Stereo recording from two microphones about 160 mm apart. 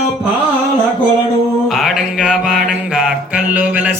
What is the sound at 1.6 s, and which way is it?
Mantra, centre (ahead or behind).